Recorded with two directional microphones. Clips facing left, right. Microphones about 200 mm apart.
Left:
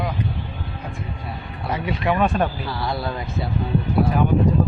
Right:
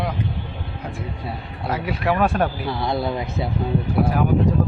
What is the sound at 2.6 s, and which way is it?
Speech, 20° right (ahead or behind).